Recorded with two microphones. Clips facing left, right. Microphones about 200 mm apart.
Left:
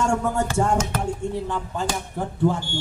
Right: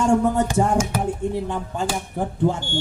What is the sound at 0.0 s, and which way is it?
A man's voice, 15° right (ahead or behind).